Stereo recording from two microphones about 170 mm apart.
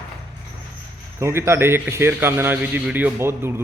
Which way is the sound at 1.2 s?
15° right (ahead or behind).